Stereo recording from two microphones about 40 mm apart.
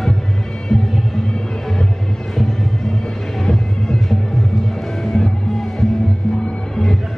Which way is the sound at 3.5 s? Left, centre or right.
Centre.